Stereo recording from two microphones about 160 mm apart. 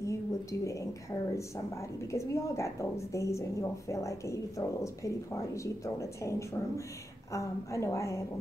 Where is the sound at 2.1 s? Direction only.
20° left (ahead or behind).